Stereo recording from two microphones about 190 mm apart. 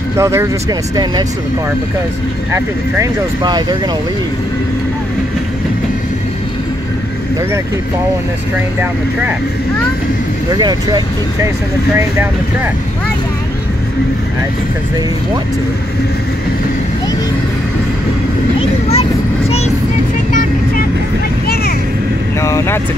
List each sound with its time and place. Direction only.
0.2 s speech: 15° right (ahead or behind)
2.5 s speech: 20° right (ahead or behind)
10.5 s speech: 20° right (ahead or behind)
18.6 s a sound: 35° left (ahead or behind)
22.4 s speech: 15° left (ahead or behind)